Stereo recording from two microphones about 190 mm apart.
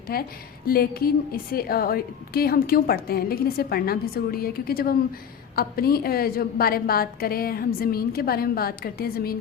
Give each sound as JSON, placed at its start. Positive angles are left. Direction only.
{"t": 0.1, "sound": "a woman's voice", "side_deg": 50}